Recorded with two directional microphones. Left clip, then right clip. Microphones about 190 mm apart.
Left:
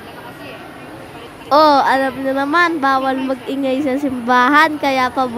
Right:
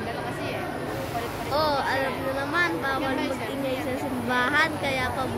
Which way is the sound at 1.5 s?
60° left (ahead or behind).